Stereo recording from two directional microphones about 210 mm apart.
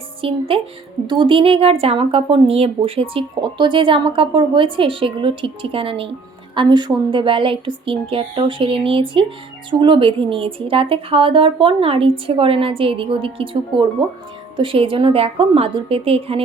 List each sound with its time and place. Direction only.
0.2 s a woman's voice: 25° right (ahead or behind)